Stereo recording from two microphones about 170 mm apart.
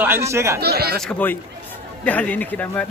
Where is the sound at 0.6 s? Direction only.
70° right (ahead or behind).